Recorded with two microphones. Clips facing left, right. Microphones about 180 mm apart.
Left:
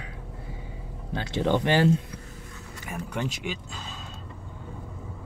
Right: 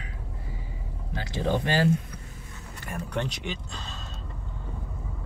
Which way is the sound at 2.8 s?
5° left (ahead or behind).